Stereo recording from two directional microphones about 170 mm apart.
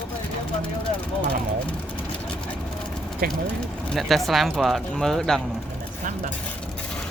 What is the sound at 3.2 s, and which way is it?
Speech, 60° right (ahead or behind).